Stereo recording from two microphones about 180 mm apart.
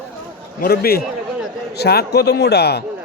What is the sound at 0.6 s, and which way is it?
A man's voice, 55° left (ahead or behind).